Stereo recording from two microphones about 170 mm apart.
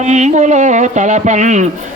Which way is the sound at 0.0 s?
45° right (ahead or behind).